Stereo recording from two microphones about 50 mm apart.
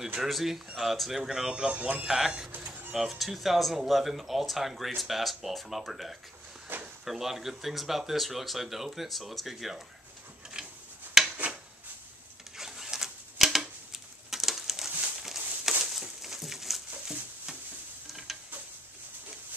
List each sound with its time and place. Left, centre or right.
0.2 s speech: centre
1.7 s speech: right
2.0 s speech: centre
2.5 s music: right
2.9 s speech: centre
6.7 s drawer open or close: right
7.1 s speech: centre
10.6 s a sound: centre
11.2 s rub: centre
12.5 s a sound: centre
18.1 s mechanisms: centre